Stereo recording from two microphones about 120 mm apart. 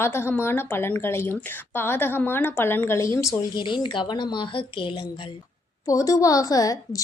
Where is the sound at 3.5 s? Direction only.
40° left (ahead or behind).